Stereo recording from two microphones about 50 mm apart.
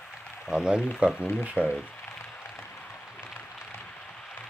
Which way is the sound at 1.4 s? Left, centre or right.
Right.